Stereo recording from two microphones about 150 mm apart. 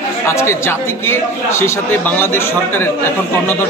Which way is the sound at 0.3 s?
20° left (ahead or behind).